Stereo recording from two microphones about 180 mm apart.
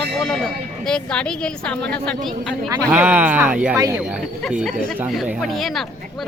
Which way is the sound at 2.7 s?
10° right (ahead or behind).